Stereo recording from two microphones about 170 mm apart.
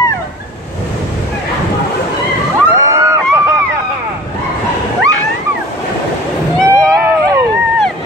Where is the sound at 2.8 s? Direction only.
15° right (ahead or behind).